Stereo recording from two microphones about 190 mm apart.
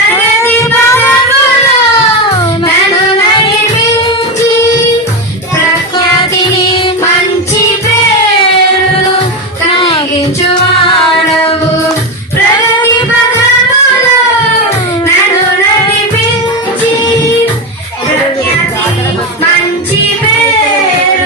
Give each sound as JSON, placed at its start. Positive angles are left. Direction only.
{"t": 0.4, "sound": "singing", "side_deg": 10}
{"t": 3.2, "sound": "music", "side_deg": 25}
{"t": 9.7, "sound": "a sound", "side_deg": 30}